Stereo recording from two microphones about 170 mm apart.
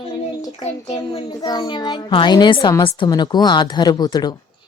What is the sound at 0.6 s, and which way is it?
Speech, 40° left (ahead or behind).